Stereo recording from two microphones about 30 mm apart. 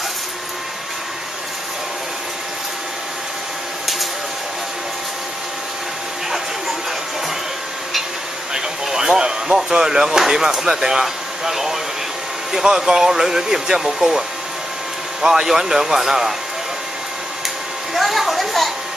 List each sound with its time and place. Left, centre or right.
8.5 s speech: right
15.2 s a man's voice: centre
17.9 s a sound: centre